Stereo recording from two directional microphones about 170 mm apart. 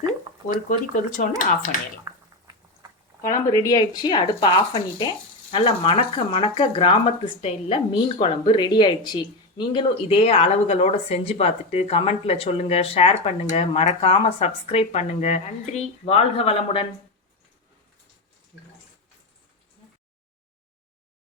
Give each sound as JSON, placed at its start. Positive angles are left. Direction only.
{"t": 1.2, "sound": "speech", "side_deg": 50}
{"t": 2.1, "sound": "a sound", "side_deg": -20}
{"t": 3.2, "sound": "speech", "side_deg": 20}